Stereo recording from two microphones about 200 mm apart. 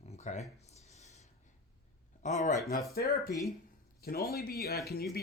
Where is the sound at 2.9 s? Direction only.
50° left (ahead or behind).